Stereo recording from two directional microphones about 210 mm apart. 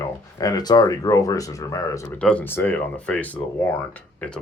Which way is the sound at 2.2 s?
5° left (ahead or behind).